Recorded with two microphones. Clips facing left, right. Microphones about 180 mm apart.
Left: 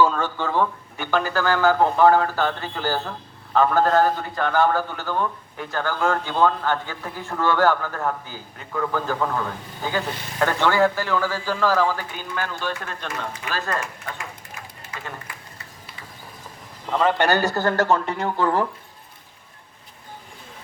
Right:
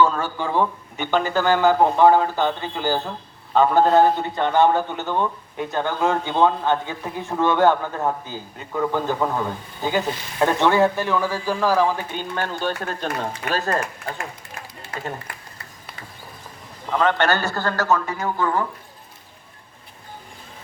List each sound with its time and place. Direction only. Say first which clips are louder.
0.2 s speech: right 1 dB; 15° right (ahead or behind); by 14.2 s 35° right (ahead or behind)
16.9 s a man's voice: even; 5° left (ahead or behind); by 18.3 s 30° left (ahead or behind)